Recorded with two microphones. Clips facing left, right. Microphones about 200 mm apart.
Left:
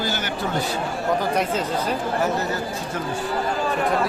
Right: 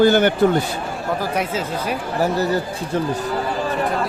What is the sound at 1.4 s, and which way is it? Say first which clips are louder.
Speech: even; 10° right (ahead or behind).